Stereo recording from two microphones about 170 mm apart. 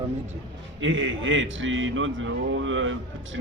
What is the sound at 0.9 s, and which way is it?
Speech, 90° right.